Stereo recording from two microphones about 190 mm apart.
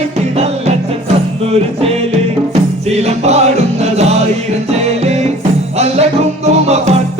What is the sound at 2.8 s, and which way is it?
Music, 35° right (ahead or behind).